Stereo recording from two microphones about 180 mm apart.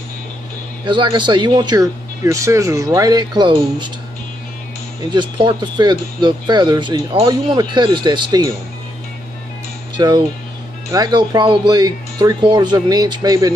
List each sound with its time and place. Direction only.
0.8 s speech: 25° right (ahead or behind)
5.1 s speech: 25° right (ahead or behind)
9.9 s speech: 25° right (ahead or behind)